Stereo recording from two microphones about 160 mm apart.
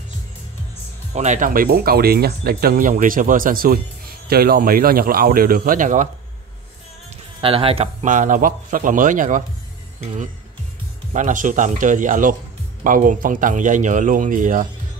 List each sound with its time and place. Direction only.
1.1 s speech: 50° right (ahead or behind)
7.4 s speech: 35° right (ahead or behind); by 14.7 s 55° right (ahead or behind)